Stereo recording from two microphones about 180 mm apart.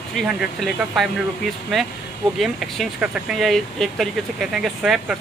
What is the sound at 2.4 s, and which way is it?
Speech, centre (ahead or behind).